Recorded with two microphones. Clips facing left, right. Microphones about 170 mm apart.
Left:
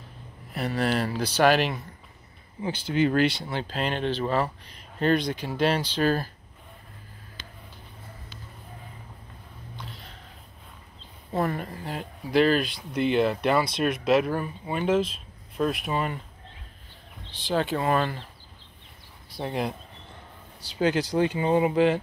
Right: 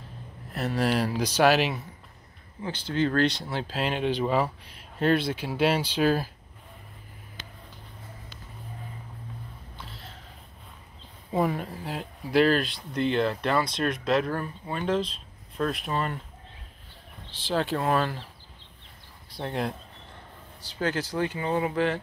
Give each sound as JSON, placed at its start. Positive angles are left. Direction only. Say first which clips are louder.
{"t": 0.5, "sound": "speech", "louder": "even", "side_deg": 0}
{"t": 2.6, "sound": "speech", "louder": "left 3 dB", "side_deg": 10}
{"t": 3.3, "sound": "speech", "louder": "left 1 dB", "side_deg": 0}
{"t": 9.8, "sound": "a sound", "louder": "left 2 dB", "side_deg": 0}
{"t": 11.3, "sound": "speech", "louder": "right 1 dB", "side_deg": -5}
{"t": 17.3, "sound": "speech", "louder": "left 1 dB", "side_deg": 0}
{"t": 19.3, "sound": "speech", "louder": "left 1 dB", "side_deg": 5}
{"t": 20.7, "sound": "speech", "louder": "left 5 dB", "side_deg": 15}